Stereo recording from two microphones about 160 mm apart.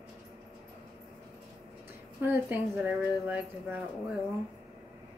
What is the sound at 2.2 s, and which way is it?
Speech, 15° right (ahead or behind).